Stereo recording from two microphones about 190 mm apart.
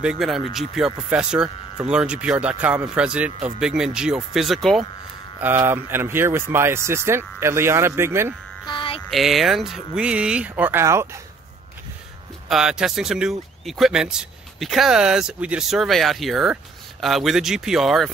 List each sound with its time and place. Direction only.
0.0 s speech: centre (ahead or behind)
5.4 s speech: 10° right (ahead or behind)
8.6 s music: 25° left (ahead or behind)
9.1 s speech: centre (ahead or behind)
12.4 s speech: 5° right (ahead or behind)